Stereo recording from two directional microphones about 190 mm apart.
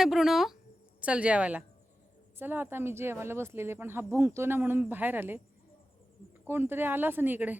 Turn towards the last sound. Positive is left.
turn(degrees=-10)  # may be behind; listen again after turning